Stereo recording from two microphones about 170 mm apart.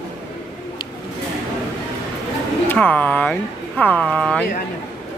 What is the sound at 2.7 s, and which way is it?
Speech, 10° left (ahead or behind).